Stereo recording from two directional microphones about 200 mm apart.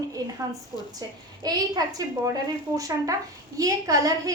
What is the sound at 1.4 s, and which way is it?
Speech, 20° right (ahead or behind).